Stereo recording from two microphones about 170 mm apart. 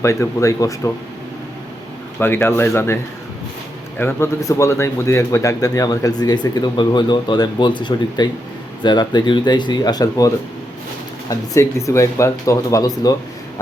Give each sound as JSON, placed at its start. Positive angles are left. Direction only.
{"t": 0.0, "sound": "speech", "side_deg": 15}
{"t": 2.1, "sound": "speech", "side_deg": 15}